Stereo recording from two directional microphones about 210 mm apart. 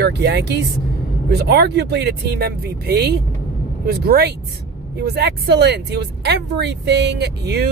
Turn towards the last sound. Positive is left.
turn(degrees=-50)  # may be behind; listen again after turning